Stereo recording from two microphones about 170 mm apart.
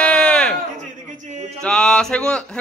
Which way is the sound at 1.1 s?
45° right (ahead or behind).